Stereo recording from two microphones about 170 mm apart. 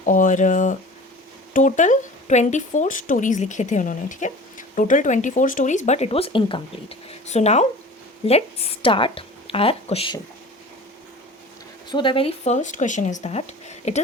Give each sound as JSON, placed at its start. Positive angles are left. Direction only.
{"t": 0.0, "sound": "speech", "side_deg": 50}
{"t": 11.9, "sound": "speech", "side_deg": 30}